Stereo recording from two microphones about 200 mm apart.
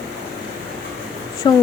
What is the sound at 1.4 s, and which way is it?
Speech, 20° left (ahead or behind).